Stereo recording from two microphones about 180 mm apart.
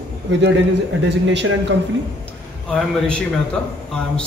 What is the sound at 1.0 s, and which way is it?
Speech, 80° right.